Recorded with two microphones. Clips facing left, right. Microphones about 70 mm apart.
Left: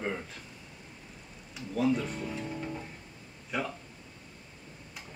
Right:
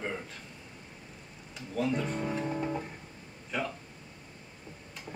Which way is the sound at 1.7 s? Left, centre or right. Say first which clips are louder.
Left 3 dB; centre.